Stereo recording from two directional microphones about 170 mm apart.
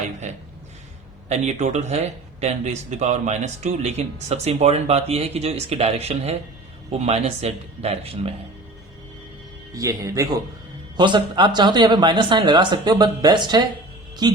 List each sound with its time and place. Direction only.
1.3 s speech: 40° right (ahead or behind)
9.7 s a man's voice: 20° right (ahead or behind)